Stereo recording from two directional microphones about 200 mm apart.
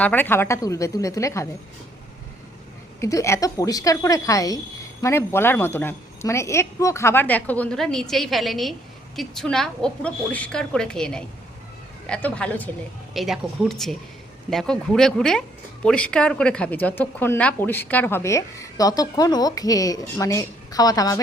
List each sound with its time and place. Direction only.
0.0 s speech: 10° left (ahead or behind)
3.0 s a woman's voice: 15° left (ahead or behind)